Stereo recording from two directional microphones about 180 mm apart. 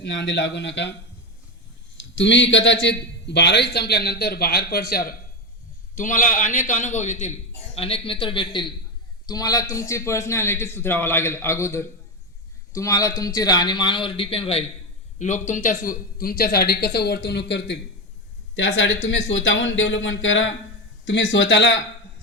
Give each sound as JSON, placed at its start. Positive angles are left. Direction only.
{"t": 0.0, "sound": "a man's voice", "side_deg": 75}
{"t": 2.1, "sound": "a man's voice", "side_deg": 85}
{"t": 6.0, "sound": "a man's voice", "side_deg": 45}
{"t": 15.2, "sound": "a man's voice", "side_deg": 45}
{"t": 18.5, "sound": "speech", "side_deg": 90}